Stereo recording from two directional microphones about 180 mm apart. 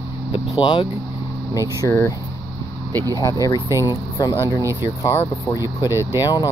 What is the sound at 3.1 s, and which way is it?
Speech, 20° left (ahead or behind).